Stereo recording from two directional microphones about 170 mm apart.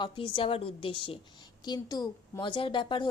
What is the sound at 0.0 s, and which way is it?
A woman's voice, 30° left (ahead or behind).